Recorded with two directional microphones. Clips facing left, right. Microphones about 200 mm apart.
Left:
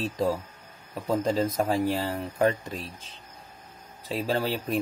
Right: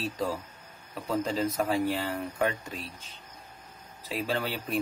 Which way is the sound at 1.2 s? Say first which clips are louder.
Left 2 dB; 40° left (ahead or behind).